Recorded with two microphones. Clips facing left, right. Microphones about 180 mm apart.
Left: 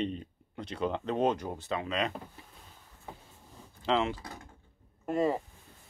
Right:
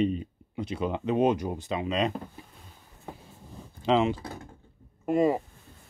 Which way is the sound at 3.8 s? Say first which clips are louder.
Right 5 dB; 15° right (ahead or behind).